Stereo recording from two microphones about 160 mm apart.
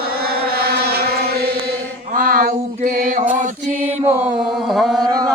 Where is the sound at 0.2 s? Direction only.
70° right (ahead or behind).